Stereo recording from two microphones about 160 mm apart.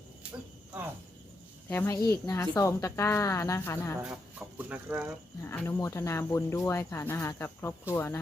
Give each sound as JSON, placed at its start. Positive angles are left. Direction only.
{"t": 1.9, "sound": "speech", "side_deg": 25}
{"t": 4.0, "sound": "speech", "side_deg": -10}
{"t": 5.4, "sound": "speech", "side_deg": 15}